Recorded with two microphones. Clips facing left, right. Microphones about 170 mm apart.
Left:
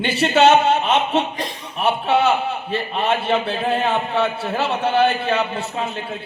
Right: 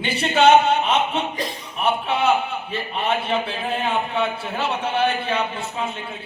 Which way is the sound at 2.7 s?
35° left (ahead or behind).